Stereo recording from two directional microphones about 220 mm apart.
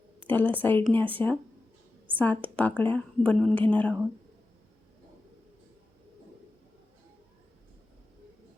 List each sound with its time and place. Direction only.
0.3 s a woman's voice: 10° left (ahead or behind)